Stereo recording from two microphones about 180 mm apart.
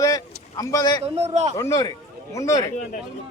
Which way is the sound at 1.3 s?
40° right (ahead or behind).